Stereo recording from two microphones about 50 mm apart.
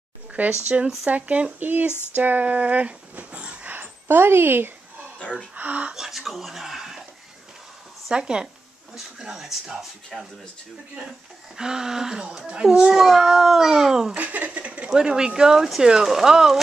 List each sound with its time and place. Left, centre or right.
0.4 s speech: right
1.9 s a sound: left
2.1 s speech: right
3.7 s a woman's voice: right
5.5 s speech: right
5.9 s whispering: centre
8.1 s a child's voice: centre
11.1 s a child's voice: centre
14.1 s speech: right
14.9 s a child's voice: centre